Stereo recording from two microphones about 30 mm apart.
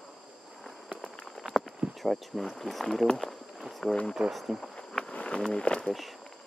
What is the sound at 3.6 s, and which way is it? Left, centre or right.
Run, centre.